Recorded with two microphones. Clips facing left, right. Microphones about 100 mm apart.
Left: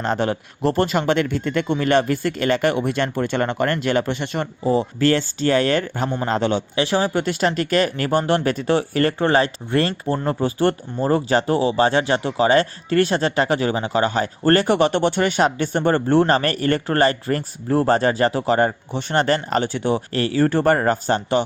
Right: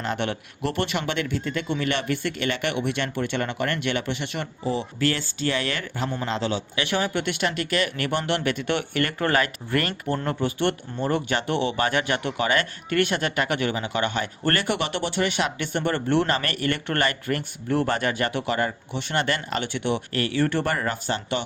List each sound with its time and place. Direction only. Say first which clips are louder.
0.0 s speech: left 6 dB; 35° left (ahead or behind)
6.7 s speech: left 5 dB; 30° left (ahead or behind)